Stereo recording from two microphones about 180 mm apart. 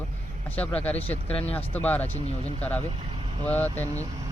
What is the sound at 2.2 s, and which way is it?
Speech, 35° left (ahead or behind).